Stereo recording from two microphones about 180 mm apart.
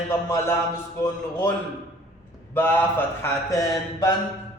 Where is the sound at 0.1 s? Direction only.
15° left (ahead or behind).